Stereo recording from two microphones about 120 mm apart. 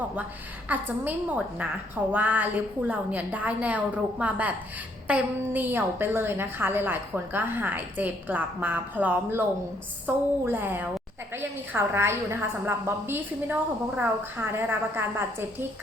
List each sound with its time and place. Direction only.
0.7 s a woman's voice: 15° right (ahead or behind)